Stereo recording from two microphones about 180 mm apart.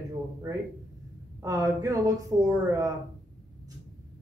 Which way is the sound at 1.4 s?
20° right (ahead or behind).